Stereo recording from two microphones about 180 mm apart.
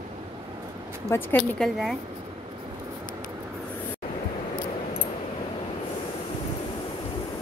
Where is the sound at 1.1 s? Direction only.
5° left (ahead or behind).